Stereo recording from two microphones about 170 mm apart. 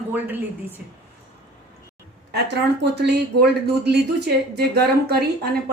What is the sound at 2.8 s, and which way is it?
Speech, 80° right.